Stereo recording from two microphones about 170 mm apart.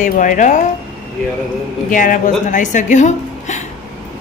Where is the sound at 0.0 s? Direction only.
50° left (ahead or behind).